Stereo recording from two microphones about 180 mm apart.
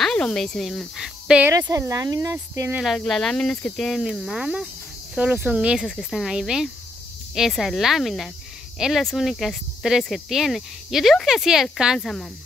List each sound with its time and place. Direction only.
0.0 s speech: 5° left (ahead or behind)
1.5 s speech: 20° right (ahead or behind)
2.8 s speech: centre (ahead or behind)